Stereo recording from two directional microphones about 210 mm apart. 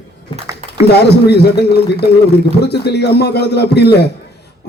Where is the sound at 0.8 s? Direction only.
50° left (ahead or behind).